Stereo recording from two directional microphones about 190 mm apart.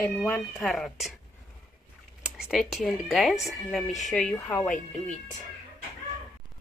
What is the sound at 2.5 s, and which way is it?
Speech, centre (ahead or behind).